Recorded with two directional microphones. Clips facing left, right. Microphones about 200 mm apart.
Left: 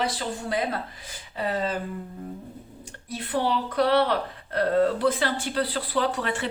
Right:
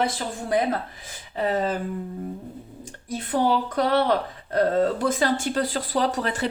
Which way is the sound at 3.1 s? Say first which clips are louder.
Right 3 dB; 45° right (ahead or behind).